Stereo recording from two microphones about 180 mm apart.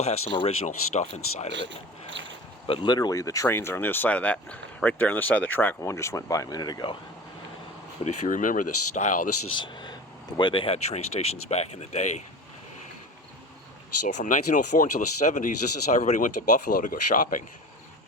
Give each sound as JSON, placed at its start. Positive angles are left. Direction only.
{"t": 0.0, "sound": "speech", "side_deg": 35}
{"t": 2.0, "sound": "speech", "side_deg": -90}
{"t": 2.6, "sound": "speech", "side_deg": 25}
{"t": 8.0, "sound": "speech", "side_deg": 45}
{"t": 9.6, "sound": "speech", "side_deg": 25}
{"t": 14.1, "sound": "speech", "side_deg": 40}